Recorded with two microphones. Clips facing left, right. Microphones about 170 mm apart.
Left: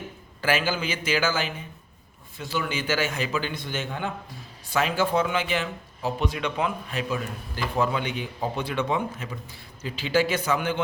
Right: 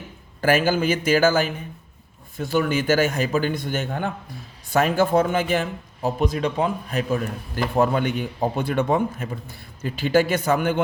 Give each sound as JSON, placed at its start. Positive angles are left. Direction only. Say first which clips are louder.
{"t": 0.4, "sound": "speech", "louder": "right 6 dB", "side_deg": -45}